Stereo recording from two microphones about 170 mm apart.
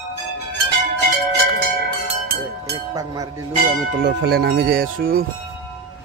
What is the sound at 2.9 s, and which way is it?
Cowbell, 20° right (ahead or behind).